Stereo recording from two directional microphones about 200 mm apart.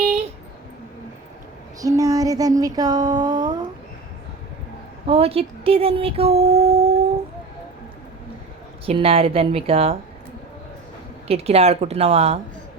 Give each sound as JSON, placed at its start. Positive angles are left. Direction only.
{"t": 1.8, "sound": "a sound", "side_deg": -15}
{"t": 5.0, "sound": "speech", "side_deg": -30}
{"t": 8.9, "sound": "a woman's voice", "side_deg": -30}
{"t": 11.3, "sound": "speech", "side_deg": -30}